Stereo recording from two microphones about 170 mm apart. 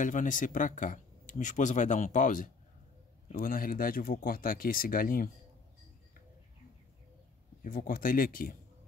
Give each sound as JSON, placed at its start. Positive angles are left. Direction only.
{"t": 0.0, "sound": "speech", "side_deg": 50}
{"t": 7.6, "sound": "speech", "side_deg": 55}